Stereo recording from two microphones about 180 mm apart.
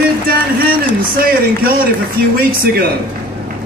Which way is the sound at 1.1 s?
55° right (ahead or behind).